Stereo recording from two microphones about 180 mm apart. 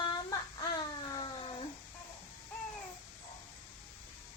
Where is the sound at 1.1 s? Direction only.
25° left (ahead or behind).